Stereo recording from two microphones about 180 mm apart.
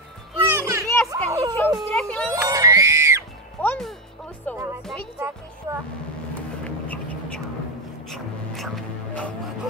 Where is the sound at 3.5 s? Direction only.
5° left (ahead or behind).